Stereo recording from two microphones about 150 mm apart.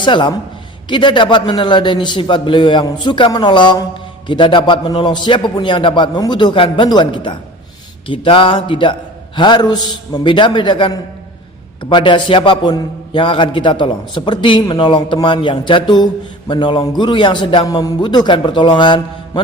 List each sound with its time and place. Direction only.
0.0 s a man's voice: 30° left (ahead or behind)